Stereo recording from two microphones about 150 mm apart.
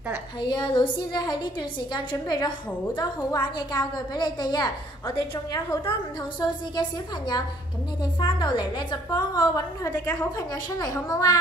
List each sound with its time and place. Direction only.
0.4 s a woman's voice: 30° left (ahead or behind)